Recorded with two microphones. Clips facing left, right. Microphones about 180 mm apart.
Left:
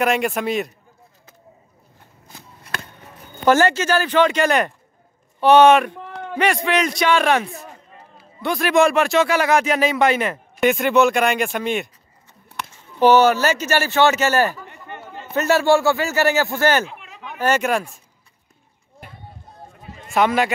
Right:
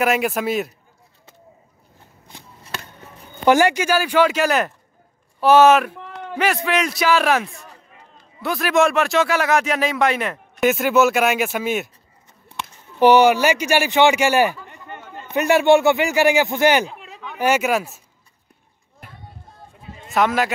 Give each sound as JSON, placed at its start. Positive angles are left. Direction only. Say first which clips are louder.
{"t": 0.0, "sound": "speech", "louder": "even", "side_deg": -5}
{"t": 3.4, "sound": "speech", "louder": "right 1 dB", "side_deg": -15}
{"t": 13.0, "sound": "speech", "louder": "right 1 dB", "side_deg": -15}
{"t": 15.0, "sound": "a sound", "louder": "left 1 dB", "side_deg": 0}
{"t": 15.3, "sound": "speech", "louder": "right 2 dB", "side_deg": -15}
{"t": 20.2, "sound": "speech", "louder": "left 1 dB", "side_deg": 0}